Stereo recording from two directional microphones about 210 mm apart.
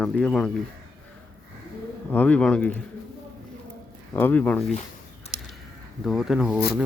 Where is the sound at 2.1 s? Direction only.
5° left (ahead or behind).